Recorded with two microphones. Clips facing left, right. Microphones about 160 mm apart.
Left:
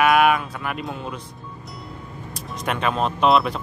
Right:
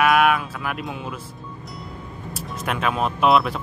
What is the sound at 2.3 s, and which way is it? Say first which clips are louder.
Speech: even; 5° right (ahead or behind).